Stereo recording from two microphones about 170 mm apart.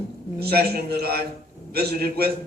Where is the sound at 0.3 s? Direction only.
70° right (ahead or behind).